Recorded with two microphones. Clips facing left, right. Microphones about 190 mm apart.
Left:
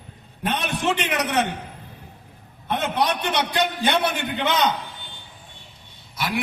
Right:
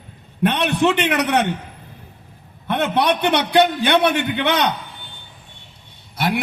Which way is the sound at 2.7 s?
65° right (ahead or behind).